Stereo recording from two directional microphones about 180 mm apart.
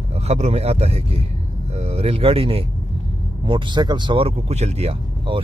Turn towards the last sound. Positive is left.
turn(degrees=-30)  # may be behind; listen again after turning